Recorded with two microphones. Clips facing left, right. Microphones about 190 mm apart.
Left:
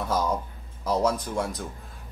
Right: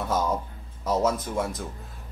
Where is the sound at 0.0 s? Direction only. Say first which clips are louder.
Even; centre (ahead or behind).